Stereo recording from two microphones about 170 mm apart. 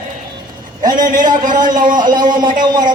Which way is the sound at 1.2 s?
25° right (ahead or behind).